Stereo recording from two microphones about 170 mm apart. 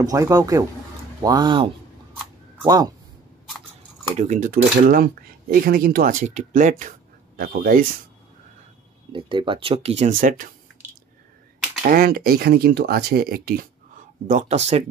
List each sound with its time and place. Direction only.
0.0 s speech: 20° right (ahead or behind)
4.2 s speech: 50° right (ahead or behind)
7.3 s speech: 55° right (ahead or behind)
9.1 s speech: 30° right (ahead or behind); by 10.5 s 50° right (ahead or behind)
11.8 s speech: 60° right (ahead or behind)
14.2 s speech: 50° right (ahead or behind)